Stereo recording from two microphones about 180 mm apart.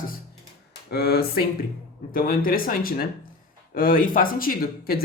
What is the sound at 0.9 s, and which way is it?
Speech, 60° left (ahead or behind).